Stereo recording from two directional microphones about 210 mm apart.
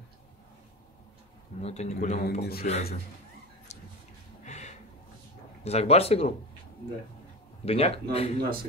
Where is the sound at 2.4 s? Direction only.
45° left (ahead or behind).